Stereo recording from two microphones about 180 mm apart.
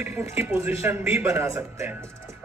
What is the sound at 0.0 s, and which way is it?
A man's voice, 10° right (ahead or behind).